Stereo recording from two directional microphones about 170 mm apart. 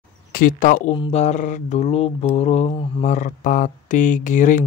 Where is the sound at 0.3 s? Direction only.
55° left (ahead or behind).